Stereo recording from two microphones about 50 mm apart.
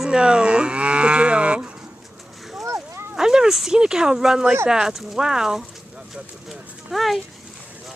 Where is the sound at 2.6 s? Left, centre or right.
Right.